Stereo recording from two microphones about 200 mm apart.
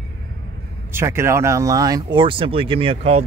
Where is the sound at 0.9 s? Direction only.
10° right (ahead or behind).